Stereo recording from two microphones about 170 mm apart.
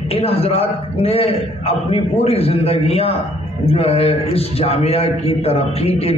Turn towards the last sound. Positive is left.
turn(degrees=35)  # may be behind; listen again after turning